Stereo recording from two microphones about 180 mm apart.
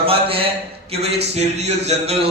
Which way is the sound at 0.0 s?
30° right (ahead or behind).